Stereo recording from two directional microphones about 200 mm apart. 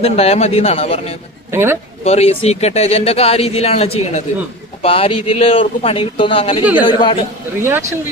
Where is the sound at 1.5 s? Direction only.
10° right (ahead or behind).